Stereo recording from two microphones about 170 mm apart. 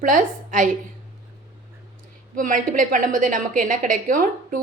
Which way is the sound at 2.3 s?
50° right (ahead or behind).